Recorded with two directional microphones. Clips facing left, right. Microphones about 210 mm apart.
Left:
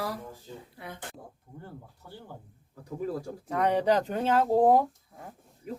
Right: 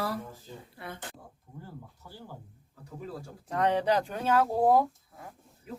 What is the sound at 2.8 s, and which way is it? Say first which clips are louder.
Speech: left 8 dB; 45° left (ahead or behind).